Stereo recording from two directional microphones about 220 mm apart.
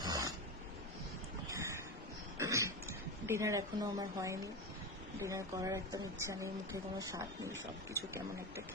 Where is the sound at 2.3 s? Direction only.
15° right (ahead or behind).